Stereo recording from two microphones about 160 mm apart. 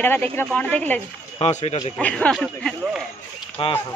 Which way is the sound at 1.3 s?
40° left (ahead or behind).